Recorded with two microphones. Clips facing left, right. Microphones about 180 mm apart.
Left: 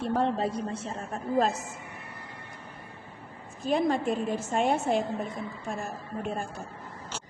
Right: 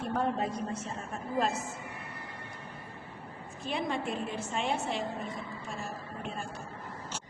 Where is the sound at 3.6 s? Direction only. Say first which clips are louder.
Left 8 dB; 40° left (ahead or behind).